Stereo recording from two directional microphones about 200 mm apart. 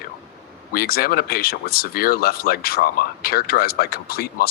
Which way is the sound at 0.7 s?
50° left (ahead or behind).